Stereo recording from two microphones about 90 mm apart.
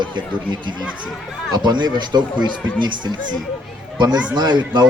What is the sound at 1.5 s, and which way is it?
Speech, 50° right (ahead or behind).